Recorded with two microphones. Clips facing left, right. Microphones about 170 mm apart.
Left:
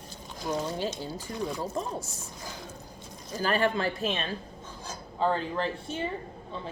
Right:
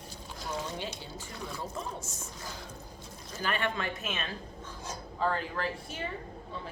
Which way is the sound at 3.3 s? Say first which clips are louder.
Left 6 dB; 35° left (ahead or behind).